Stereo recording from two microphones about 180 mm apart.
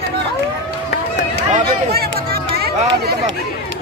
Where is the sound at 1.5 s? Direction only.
60° right (ahead or behind).